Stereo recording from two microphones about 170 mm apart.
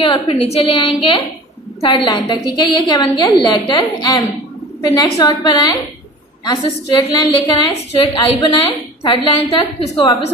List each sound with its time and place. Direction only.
0.0 s a woman's voice: 30° left (ahead or behind)